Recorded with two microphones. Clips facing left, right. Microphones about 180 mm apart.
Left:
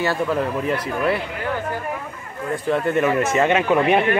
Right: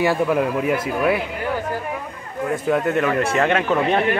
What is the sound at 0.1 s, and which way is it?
A man's voice, 10° right (ahead or behind).